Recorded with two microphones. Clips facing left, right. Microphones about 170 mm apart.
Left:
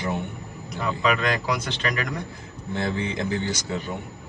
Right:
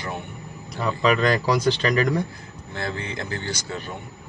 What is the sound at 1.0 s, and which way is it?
A man's voice, 35° right (ahead or behind).